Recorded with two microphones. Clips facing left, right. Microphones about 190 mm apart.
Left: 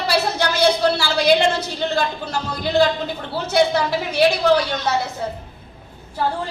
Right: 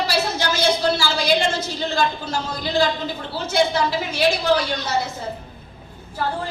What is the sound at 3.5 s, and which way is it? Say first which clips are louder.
Speech: left 2 dB; 60° left (ahead or behind).